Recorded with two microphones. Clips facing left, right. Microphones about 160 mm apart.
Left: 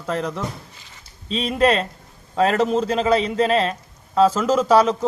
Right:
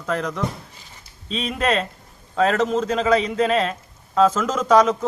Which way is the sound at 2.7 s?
35° left (ahead or behind).